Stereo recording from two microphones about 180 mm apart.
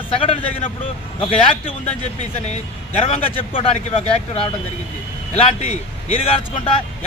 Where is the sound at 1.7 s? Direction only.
35° left (ahead or behind).